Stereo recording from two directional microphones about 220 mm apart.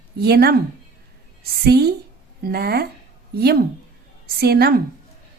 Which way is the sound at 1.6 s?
45° right (ahead or behind).